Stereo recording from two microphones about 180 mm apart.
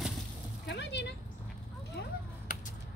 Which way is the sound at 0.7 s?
70° left (ahead or behind).